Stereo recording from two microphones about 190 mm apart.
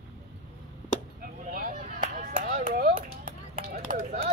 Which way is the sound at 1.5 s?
45° right (ahead or behind).